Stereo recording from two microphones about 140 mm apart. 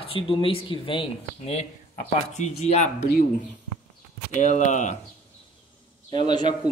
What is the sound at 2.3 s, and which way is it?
Speech, 55° left (ahead or behind).